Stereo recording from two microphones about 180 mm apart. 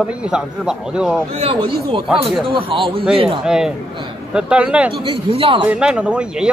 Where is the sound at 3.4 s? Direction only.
5° right (ahead or behind).